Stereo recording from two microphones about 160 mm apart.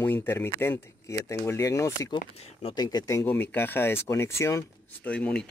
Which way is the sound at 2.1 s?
30° left (ahead or behind).